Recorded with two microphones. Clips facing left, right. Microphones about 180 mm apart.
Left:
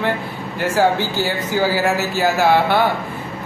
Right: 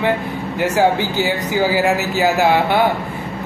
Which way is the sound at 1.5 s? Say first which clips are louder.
Right 1 dB; 15° right (ahead or behind).